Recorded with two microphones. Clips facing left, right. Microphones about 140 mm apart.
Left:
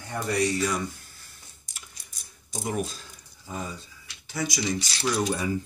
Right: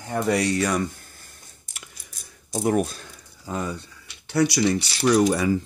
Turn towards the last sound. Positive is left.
turn(degrees=-80)